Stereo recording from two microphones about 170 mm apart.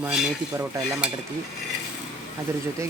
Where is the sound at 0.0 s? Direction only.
5° right (ahead or behind).